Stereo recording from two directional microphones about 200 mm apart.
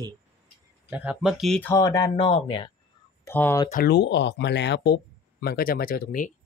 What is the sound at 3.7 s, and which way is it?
Speech, 50° left (ahead or behind).